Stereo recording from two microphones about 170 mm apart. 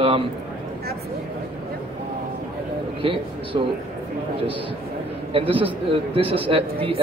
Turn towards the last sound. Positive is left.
turn(degrees=-30)  # may be behind; listen again after turning